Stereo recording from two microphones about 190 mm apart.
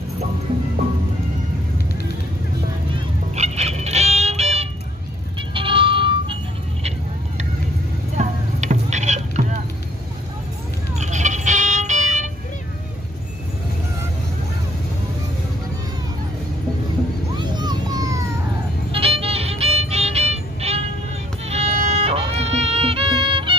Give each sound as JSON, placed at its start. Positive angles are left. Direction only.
{"t": 3.3, "sound": "music", "side_deg": -35}
{"t": 8.2, "sound": "rowboat", "side_deg": -40}
{"t": 11.0, "sound": "music", "side_deg": -40}
{"t": 17.4, "sound": "a sound", "side_deg": -20}
{"t": 18.9, "sound": "music", "side_deg": -30}